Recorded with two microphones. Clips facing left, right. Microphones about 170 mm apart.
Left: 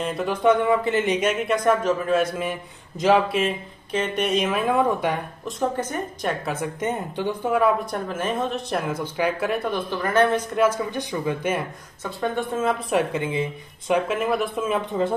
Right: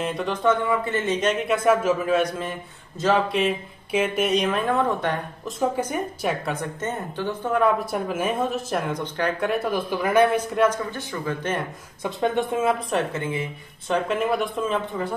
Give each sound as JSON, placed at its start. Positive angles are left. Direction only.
{"t": 0.0, "sound": "speech", "side_deg": 5}
{"t": 3.3, "sound": "speech", "side_deg": -5}
{"t": 5.6, "sound": "a woman's voice", "side_deg": -10}
{"t": 6.4, "sound": "speech", "side_deg": 5}
{"t": 7.9, "sound": "speech", "side_deg": -10}
{"t": 10.5, "sound": "speech", "side_deg": 5}
{"t": 12.0, "sound": "a woman's voice", "side_deg": -15}
{"t": 12.9, "sound": "speech", "side_deg": 15}
{"t": 14.9, "sound": "speech", "side_deg": 25}